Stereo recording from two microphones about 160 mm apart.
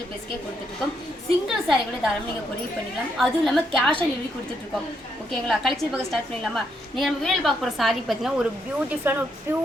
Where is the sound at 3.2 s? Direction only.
Centre (ahead or behind).